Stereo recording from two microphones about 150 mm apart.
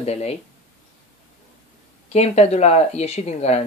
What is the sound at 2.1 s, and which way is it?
Speech, 45° left (ahead or behind).